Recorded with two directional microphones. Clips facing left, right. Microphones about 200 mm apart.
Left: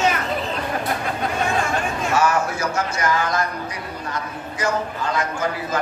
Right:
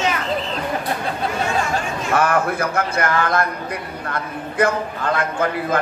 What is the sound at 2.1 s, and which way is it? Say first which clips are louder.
A man's voice: right 2 dB; 55° right (ahead or behind).